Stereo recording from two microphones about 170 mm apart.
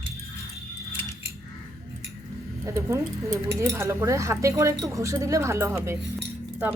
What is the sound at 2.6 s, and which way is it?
Speech, 15° right (ahead or behind).